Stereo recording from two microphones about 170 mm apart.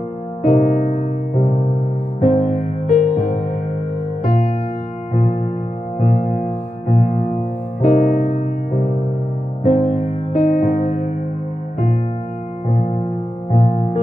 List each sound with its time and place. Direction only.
0.4 s music: 50° left (ahead or behind)
9.6 s music: 45° left (ahead or behind)
12.6 s music: 40° left (ahead or behind)